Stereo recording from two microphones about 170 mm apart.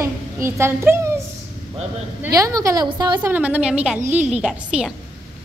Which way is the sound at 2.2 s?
20° right (ahead or behind).